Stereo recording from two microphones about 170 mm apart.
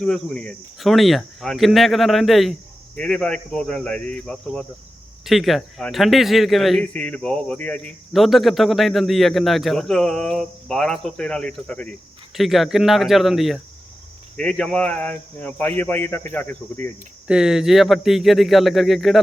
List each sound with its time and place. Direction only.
0.0 s speech: 5° left (ahead or behind)
17.2 s speech: 5° right (ahead or behind)